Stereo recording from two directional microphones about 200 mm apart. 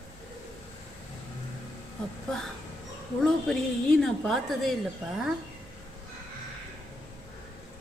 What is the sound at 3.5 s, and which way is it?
A woman's voice, centre (ahead or behind).